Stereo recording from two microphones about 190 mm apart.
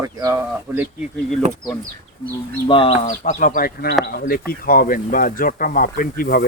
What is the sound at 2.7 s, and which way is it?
Speech, 25° left (ahead or behind).